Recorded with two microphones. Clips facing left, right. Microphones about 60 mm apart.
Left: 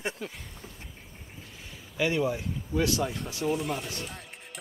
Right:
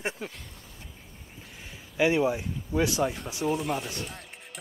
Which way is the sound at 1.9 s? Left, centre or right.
Right.